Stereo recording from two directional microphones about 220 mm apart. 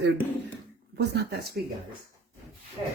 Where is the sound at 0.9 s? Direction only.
50° right (ahead or behind).